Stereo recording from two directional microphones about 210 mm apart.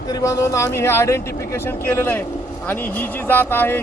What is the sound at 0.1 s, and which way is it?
Speech, 15° left (ahead or behind).